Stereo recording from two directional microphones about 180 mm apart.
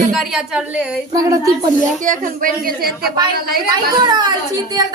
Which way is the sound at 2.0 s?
50° right (ahead or behind).